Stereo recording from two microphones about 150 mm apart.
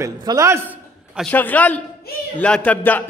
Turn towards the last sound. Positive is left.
turn(degrees=10)  # may be behind; listen again after turning